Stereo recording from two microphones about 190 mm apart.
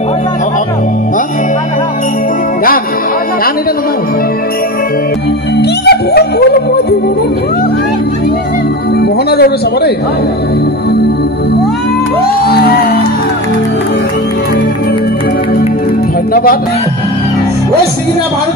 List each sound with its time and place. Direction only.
5.6 s music: 60° left (ahead or behind)
9.3 s a man's voice: 55° left (ahead or behind)
12.4 s music: 55° left (ahead or behind)